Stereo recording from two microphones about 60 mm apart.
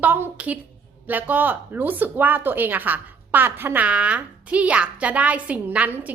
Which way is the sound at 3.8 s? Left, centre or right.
Right.